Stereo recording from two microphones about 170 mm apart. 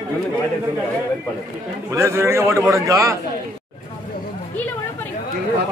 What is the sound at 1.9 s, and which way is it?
A man's voice, 15° right (ahead or behind).